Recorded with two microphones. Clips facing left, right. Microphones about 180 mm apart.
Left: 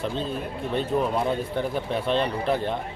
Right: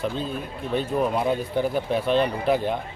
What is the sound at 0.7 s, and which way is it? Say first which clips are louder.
A man's voice: right 1 dB; 5° right (ahead or behind).